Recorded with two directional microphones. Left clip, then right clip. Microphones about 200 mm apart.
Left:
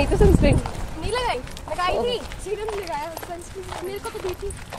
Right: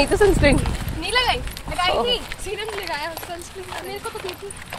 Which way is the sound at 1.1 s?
55° left (ahead or behind).